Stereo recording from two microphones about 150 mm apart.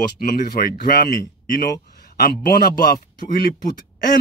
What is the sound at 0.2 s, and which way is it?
Speech, 80° left.